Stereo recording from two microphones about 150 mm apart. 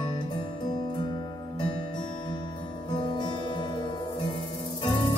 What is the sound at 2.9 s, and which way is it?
Music, 30° left (ahead or behind).